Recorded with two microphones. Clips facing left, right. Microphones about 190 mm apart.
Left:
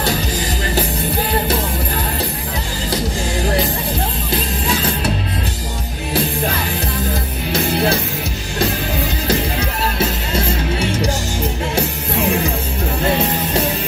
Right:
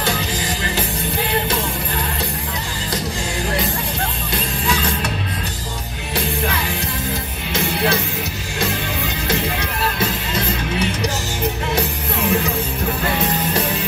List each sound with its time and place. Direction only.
4.6 s music: 35° left (ahead or behind)
7.5 s music: 30° left (ahead or behind)